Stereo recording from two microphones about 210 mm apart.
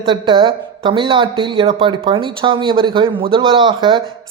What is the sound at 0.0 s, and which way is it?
A woman's voice, 25° right (ahead or behind).